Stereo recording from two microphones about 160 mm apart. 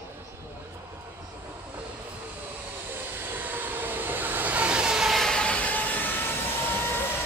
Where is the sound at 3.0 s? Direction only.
10° right (ahead or behind); by 6.0 s 10° left (ahead or behind).